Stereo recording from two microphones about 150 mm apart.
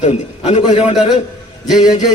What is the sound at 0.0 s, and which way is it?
Speech, 50° left (ahead or behind).